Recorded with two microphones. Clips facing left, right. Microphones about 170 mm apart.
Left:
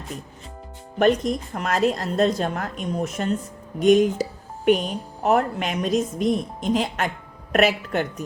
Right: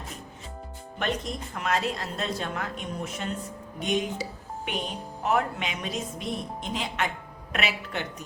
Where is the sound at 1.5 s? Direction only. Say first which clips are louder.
Left 5 dB; 45° left (ahead or behind).